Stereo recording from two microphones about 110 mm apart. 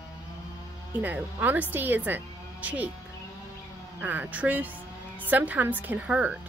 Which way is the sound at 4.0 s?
15° right (ahead or behind).